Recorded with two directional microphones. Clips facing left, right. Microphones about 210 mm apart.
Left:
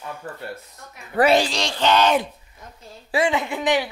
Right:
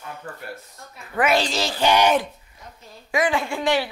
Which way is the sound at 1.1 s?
35° left (ahead or behind).